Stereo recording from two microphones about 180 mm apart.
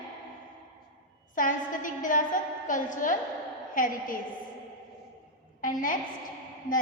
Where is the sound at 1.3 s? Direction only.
45° left (ahead or behind).